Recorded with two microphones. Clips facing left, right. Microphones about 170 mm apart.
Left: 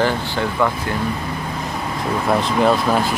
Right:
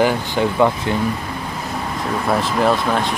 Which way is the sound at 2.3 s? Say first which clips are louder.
Left 1 dB; centre (ahead or behind).